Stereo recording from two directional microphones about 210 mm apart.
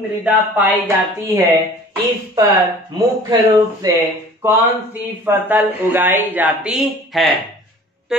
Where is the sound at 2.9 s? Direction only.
15° right (ahead or behind).